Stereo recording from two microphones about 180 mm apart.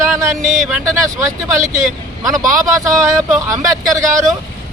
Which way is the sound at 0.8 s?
15° right (ahead or behind).